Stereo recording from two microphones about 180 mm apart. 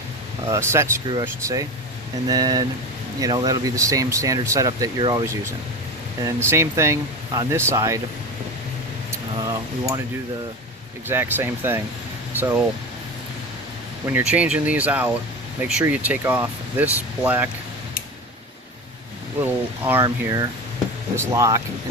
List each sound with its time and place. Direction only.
0.4 s speech: 15° right (ahead or behind)
9.4 s speech: 20° right (ahead or behind)
11.1 s speech: 10° right (ahead or behind)
14.1 s speech: 10° right (ahead or behind)
19.5 s speech: 10° right (ahead or behind)
20.1 s speech: 20° right (ahead or behind)